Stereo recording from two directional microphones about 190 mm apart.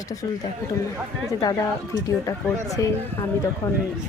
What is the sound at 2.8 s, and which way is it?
Speech, 15° left (ahead or behind).